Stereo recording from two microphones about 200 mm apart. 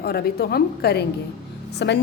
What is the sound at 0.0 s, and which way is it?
A woman's voice, 50° left (ahead or behind).